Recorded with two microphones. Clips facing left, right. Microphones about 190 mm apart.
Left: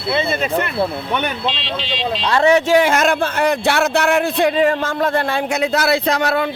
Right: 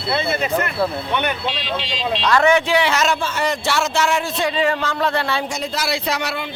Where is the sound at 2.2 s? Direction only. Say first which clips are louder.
Left 2 dB; 30° left (ahead or behind).